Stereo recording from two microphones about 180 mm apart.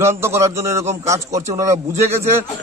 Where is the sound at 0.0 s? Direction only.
15° right (ahead or behind).